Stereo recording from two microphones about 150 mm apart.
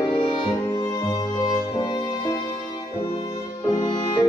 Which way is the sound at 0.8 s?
25° left (ahead or behind).